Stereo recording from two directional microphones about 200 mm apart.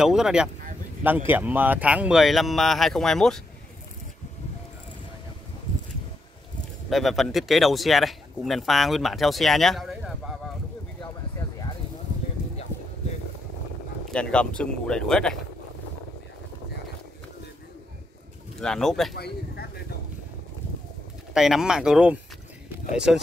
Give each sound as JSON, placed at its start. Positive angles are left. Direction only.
{"t": 0.0, "sound": "speech", "side_deg": 0}
{"t": 6.9, "sound": "speech", "side_deg": 0}
{"t": 11.0, "sound": "a sound", "side_deg": 20}
{"t": 14.1, "sound": "speech", "side_deg": 5}
{"t": 18.6, "sound": "speech", "side_deg": 0}
{"t": 19.1, "sound": "speech", "side_deg": 55}
{"t": 21.3, "sound": "speech", "side_deg": -5}